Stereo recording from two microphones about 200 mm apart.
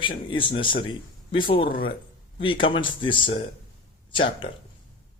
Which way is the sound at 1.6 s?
45° left (ahead or behind).